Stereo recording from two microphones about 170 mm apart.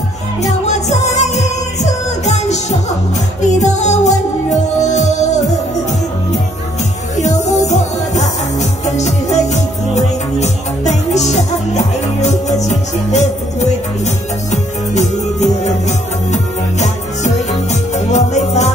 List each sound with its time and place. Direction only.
0.4 s music: 40° left (ahead or behind)
7.2 s music: 45° left (ahead or behind)